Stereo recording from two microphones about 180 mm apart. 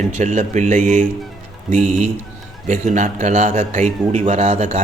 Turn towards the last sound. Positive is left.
turn(degrees=-40)  # may be behind; listen again after turning